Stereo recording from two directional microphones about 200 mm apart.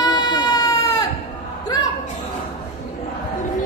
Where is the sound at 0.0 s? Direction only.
20° left (ahead or behind).